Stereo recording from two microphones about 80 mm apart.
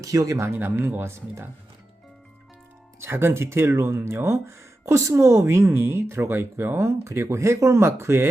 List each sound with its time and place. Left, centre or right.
0.0 s speech: right
3.0 s speech: right